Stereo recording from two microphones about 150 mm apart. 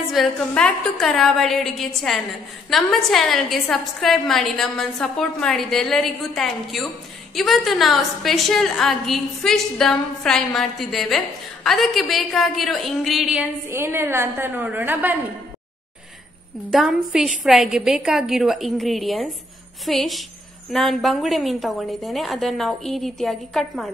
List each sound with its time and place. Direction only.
0.1 s a woman's voice: centre (ahead or behind)
16.7 s a woman's voice: 5° right (ahead or behind)